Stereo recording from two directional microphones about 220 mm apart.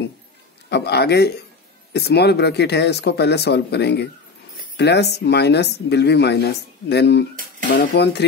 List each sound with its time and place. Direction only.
0.7 s speech: 50° left (ahead or behind)